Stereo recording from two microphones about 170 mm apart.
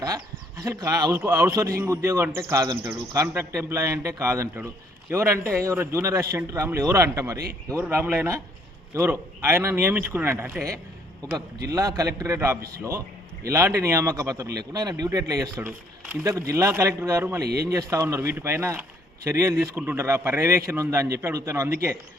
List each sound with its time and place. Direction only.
0.0 s a man's voice: 20° right (ahead or behind)
17.4 s speech: 70° right (ahead or behind)
17.7 s a man's voice: 20° right (ahead or behind)